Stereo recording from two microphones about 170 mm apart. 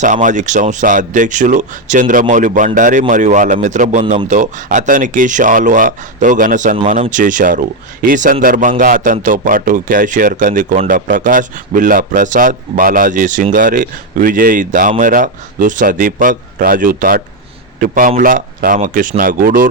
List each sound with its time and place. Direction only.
0.0 s speech: 45° right (ahead or behind)